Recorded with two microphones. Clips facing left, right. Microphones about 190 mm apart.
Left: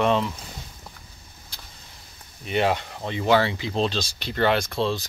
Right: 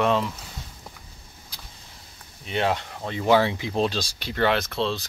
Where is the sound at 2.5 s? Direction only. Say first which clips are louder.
Left 2 dB; 5° left (ahead or behind).